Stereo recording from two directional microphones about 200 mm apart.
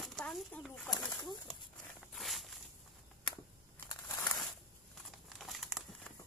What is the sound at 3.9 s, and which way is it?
Crumpling, 15° left (ahead or behind).